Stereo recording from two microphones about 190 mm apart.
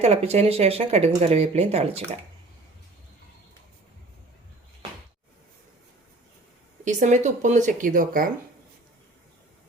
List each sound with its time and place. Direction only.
0.0 s speech: 35° right (ahead or behind)
6.8 s speech: 40° right (ahead or behind)